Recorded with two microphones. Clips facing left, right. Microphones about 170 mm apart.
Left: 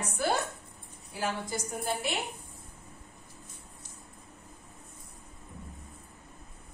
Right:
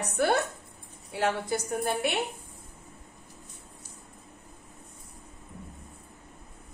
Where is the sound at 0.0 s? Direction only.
65° right (ahead or behind).